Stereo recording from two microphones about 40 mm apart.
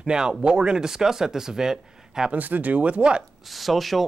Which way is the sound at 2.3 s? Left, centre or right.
Right.